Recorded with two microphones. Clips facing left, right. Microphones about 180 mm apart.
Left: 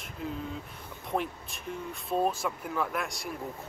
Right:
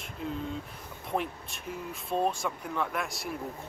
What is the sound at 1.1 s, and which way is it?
Speech, centre (ahead or behind).